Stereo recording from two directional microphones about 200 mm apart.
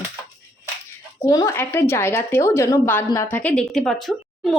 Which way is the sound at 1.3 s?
15° left (ahead or behind).